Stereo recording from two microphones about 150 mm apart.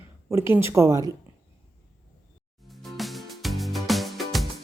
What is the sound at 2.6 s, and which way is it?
Music, centre (ahead or behind).